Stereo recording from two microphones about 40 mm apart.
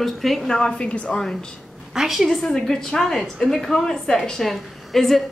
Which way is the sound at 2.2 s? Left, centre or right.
Centre.